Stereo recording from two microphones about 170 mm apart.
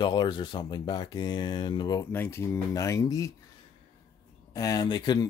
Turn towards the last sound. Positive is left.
turn(degrees=25)  # may be behind; listen again after turning